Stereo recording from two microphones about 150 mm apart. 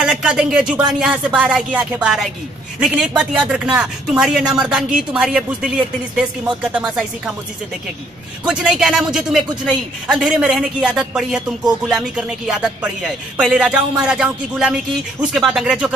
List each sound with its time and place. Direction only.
0.0 s speech: 5° right (ahead or behind)
8.5 s speech: 5° right (ahead or behind)